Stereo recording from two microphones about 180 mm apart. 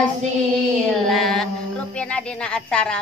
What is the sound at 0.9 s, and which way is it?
Mantra, centre (ahead or behind).